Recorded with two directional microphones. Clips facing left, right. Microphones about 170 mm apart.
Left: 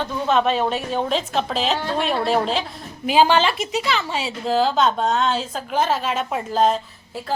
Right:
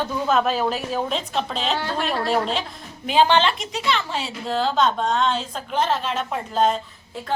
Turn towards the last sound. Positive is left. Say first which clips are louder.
# left 2 dB
turn(degrees=0)  # may be behind; listen again after turning